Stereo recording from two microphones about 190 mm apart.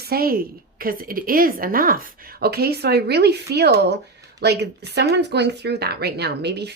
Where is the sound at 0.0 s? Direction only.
55° right (ahead or behind).